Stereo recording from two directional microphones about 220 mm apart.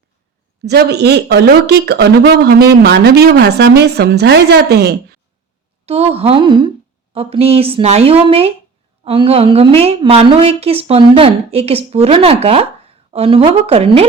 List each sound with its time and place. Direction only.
0.6 s speech: 50° right (ahead or behind)
5.8 s a woman's voice: 30° right (ahead or behind)